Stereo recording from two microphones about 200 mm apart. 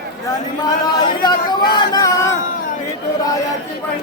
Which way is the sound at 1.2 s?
20° left (ahead or behind).